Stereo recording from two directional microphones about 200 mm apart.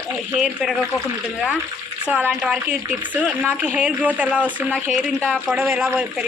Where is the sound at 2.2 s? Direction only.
10° right (ahead or behind).